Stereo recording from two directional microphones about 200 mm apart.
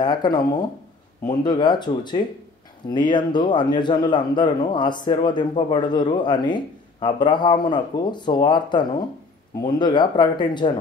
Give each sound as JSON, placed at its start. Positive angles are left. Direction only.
{"t": 0.0, "sound": "a man's voice", "side_deg": 20}